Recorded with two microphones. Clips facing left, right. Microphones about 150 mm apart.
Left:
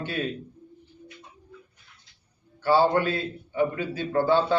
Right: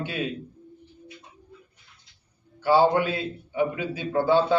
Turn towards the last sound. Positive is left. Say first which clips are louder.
# right 1 dB
turn(degrees=-10)  # may be behind; listen again after turning